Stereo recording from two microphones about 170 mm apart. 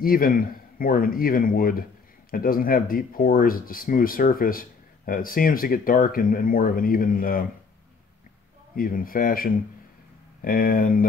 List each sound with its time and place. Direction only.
0.0 s speech: 60° left (ahead or behind)
8.7 s speech: 55° left (ahead or behind)